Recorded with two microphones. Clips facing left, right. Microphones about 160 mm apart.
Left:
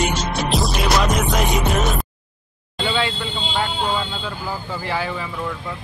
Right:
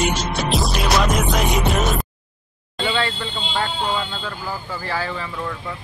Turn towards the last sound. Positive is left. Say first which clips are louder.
# left 1 dB
turn(degrees=15)  # may be behind; listen again after turning